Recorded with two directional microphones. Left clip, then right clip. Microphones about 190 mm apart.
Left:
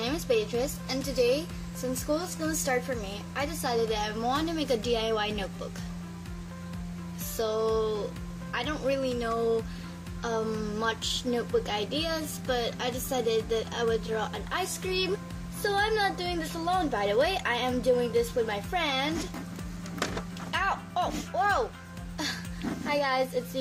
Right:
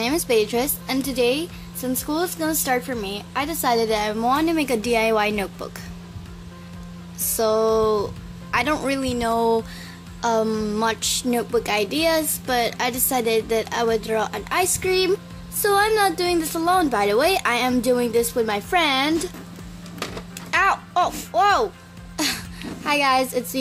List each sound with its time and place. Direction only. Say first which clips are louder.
0.0 s a woman's voice: right 8 dB; 45° right (ahead or behind)
0.8 s a woman's voice: right 6 dB; centre (ahead or behind)
1.2 s speech: right 5 dB; 15° right (ahead or behind)
2.2 s a woman's voice: right 8 dB; 55° right (ahead or behind); by 5.3 s 40° right (ahead or behind)
7.3 s a woman's voice: right 9 dB; 40° right (ahead or behind)
20.5 s speech: right 10 dB; 45° right (ahead or behind)
22.1 s music: right 9 dB; 45° right (ahead or behind)
22.8 s a woman's voice: right 9 dB; 45° right (ahead or behind)